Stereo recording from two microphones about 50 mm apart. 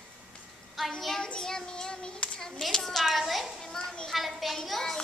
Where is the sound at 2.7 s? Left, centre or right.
Centre.